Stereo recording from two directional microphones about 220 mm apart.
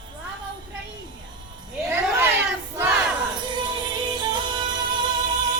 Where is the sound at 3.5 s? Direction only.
20° right (ahead or behind).